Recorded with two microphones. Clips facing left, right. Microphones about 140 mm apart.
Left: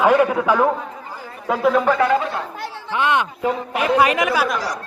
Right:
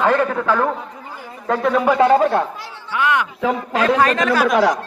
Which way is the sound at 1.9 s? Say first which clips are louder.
Right 4 dB; 25° right (ahead or behind).